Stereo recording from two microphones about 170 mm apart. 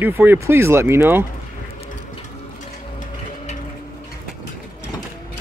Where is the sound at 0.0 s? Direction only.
10° right (ahead or behind).